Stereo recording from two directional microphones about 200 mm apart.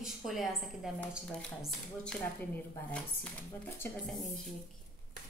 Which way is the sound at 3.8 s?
Centre (ahead or behind).